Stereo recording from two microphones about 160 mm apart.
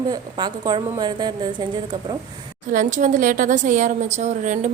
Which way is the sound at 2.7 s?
50° right (ahead or behind).